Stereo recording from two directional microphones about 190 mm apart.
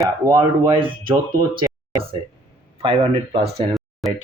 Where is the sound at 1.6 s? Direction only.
25° right (ahead or behind).